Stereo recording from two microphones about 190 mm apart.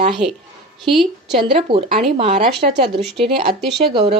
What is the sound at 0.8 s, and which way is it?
Speech, centre (ahead or behind).